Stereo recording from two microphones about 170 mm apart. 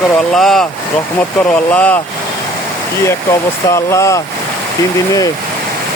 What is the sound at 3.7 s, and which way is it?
Speech, 15° left (ahead or behind).